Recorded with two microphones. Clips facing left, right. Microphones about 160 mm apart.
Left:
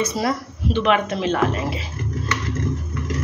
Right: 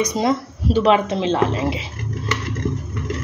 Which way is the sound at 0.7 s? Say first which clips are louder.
Right 3 dB; 35° right (ahead or behind).